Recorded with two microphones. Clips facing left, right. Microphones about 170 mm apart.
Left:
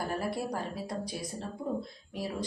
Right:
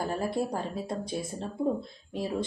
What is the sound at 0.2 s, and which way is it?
Speech, 25° right (ahead or behind).